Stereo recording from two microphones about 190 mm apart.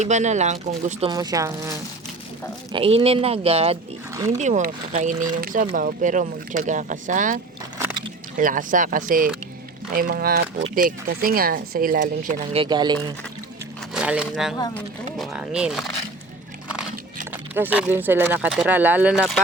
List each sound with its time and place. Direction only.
0.0 s speech: 40° right (ahead or behind)
1.1 s speech: 20° right (ahead or behind)
2.7 s speech: 30° right (ahead or behind)
4.1 s speech: 15° right (ahead or behind)
4.4 s speech: 40° right (ahead or behind)
12.5 s speech: 20° right (ahead or behind)
13.9 s speech: 5° right (ahead or behind)
17.3 s speech: 10° right (ahead or behind)